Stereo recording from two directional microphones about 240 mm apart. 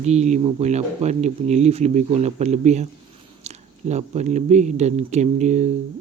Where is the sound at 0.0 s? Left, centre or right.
Right.